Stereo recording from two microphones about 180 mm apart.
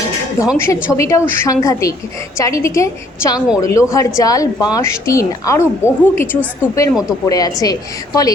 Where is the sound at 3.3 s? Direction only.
5° right (ahead or behind).